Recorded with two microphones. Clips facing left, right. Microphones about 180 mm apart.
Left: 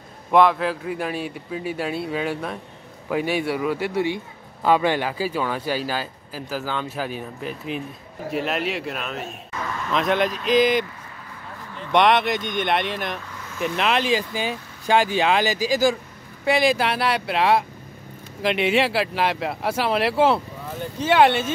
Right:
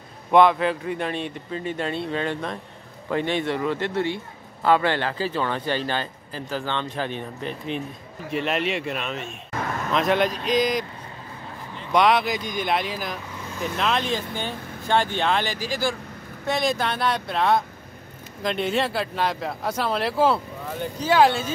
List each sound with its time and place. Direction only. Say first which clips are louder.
0.3 s speech: right 1 dB; centre (ahead or behind)
9.5 s a sound: right 3 dB; 50° right (ahead or behind)
9.9 s speech: even; centre (ahead or behind)
11.9 s speech: left 2 dB; centre (ahead or behind)
16.4 s speech: left 4 dB; 5° left (ahead or behind)
18.4 s a man's voice: left 4 dB; 80° left
18.8 s speech: left 3 dB; 5° left (ahead or behind)